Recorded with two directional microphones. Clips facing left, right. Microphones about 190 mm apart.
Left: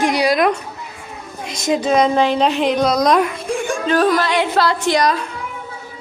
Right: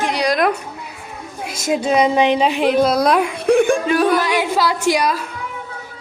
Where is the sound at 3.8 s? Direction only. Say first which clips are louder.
Even; 15° right (ahead or behind).